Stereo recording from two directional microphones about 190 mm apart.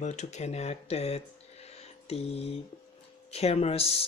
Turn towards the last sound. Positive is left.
turn(degrees=30)  # may be behind; listen again after turning